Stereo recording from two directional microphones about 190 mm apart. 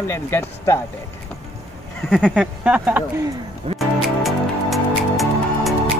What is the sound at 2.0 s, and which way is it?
Speech, centre (ahead or behind).